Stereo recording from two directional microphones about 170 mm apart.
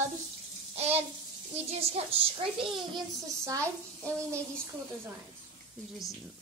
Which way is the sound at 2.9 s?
20° right (ahead or behind).